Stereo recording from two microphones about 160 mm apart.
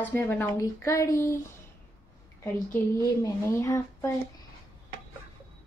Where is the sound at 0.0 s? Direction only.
15° left (ahead or behind).